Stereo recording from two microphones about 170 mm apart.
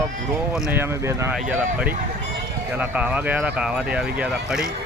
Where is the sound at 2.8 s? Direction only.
10° right (ahead or behind).